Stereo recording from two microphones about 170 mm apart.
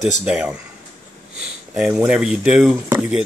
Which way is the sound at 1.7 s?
5° right (ahead or behind).